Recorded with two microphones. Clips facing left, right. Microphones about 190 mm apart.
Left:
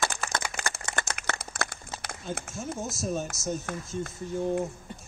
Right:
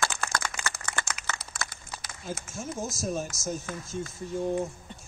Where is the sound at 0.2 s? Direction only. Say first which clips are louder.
Even; 5° left (ahead or behind).